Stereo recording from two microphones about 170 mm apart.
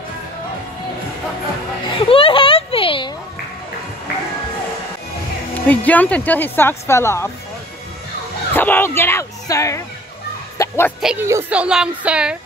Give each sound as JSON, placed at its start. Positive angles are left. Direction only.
{"t": 2.0, "sound": "a sound", "side_deg": 30}
{"t": 5.7, "sound": "speech", "side_deg": 10}
{"t": 8.5, "sound": "speech", "side_deg": 10}
{"t": 10.6, "sound": "a sound", "side_deg": 20}
{"t": 11.0, "sound": "a woman's voice", "side_deg": -5}
{"t": 11.2, "sound": "a woman's voice", "side_deg": -15}
{"t": 11.5, "sound": "a woman's voice", "side_deg": -5}